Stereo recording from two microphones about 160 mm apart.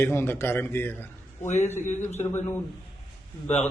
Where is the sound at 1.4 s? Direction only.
45° left (ahead or behind).